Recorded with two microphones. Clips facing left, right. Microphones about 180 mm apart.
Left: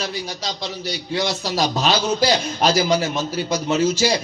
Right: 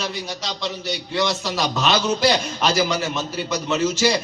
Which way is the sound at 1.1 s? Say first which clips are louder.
Left 1 dB; 35° left (ahead or behind).